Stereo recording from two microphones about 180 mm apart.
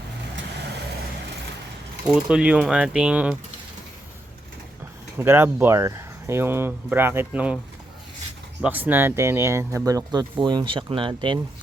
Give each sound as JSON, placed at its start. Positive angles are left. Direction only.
{"t": 2.0, "sound": "speech", "side_deg": -5}
{"t": 5.1, "sound": "speech", "side_deg": -10}
{"t": 8.6, "sound": "speech", "side_deg": -10}